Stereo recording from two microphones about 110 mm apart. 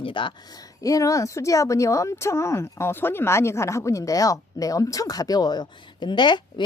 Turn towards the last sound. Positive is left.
turn(degrees=45)  # may be behind; listen again after turning